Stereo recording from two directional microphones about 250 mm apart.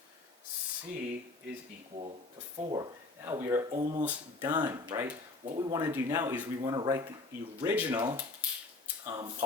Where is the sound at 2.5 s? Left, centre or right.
Centre.